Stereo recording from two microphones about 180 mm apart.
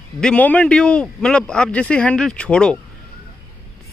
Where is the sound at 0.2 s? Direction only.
5° left (ahead or behind).